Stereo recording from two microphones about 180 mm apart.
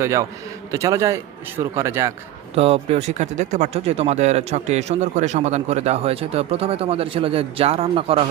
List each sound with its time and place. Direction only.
0.0 s a man's voice: 15° right (ahead or behind)
2.6 s speech: 35° right (ahead or behind)